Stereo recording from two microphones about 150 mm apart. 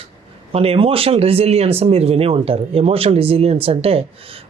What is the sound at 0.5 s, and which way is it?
A man's voice, 40° right (ahead or behind).